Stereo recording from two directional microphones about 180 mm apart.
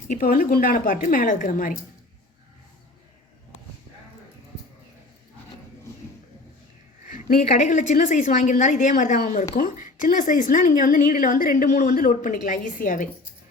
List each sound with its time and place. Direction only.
0.1 s a woman's voice: 50° left (ahead or behind)
7.1 s a sound: 50° left (ahead or behind)
7.4 s a woman's voice: 40° left (ahead or behind)